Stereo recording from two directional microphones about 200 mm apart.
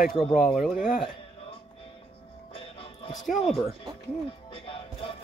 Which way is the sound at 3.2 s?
Centre (ahead or behind).